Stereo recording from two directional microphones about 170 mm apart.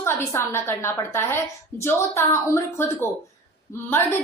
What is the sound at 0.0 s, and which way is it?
A woman's voice, 15° left (ahead or behind).